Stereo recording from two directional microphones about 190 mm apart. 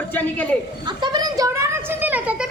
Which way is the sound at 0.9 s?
25° right (ahead or behind).